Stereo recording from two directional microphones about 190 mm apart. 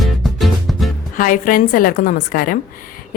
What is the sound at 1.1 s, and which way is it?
A woman's voice, 45° left (ahead or behind).